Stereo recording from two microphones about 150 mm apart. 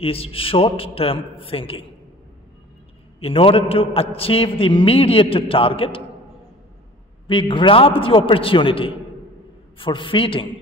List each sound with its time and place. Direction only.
0.0 s a man's voice: 40° left (ahead or behind)
3.2 s a man's voice: 40° left (ahead or behind)
7.2 s a man's voice: 35° left (ahead or behind)